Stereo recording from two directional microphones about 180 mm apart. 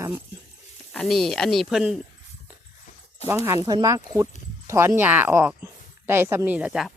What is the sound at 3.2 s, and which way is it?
Speech, 15° right (ahead or behind).